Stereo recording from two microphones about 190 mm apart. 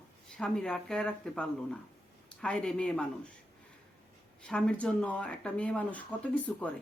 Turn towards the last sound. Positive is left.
turn(degrees=5)  # may be behind; listen again after turning